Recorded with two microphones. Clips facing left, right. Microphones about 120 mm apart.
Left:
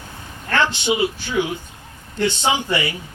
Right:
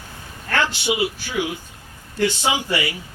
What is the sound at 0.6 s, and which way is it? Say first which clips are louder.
A man's voice: left 3 dB; 25° left (ahead or behind).